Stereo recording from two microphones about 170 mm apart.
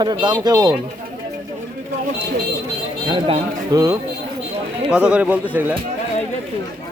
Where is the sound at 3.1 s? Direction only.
35° right (ahead or behind).